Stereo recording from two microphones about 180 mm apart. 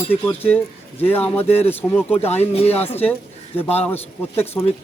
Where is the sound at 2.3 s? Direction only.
35° left (ahead or behind).